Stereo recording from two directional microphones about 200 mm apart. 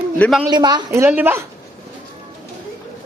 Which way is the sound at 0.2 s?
Centre (ahead or behind).